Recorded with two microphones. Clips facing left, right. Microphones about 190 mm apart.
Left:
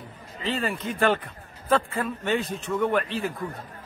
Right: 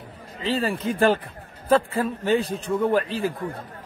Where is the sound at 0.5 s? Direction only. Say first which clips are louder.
Right 4 dB; 30° right (ahead or behind).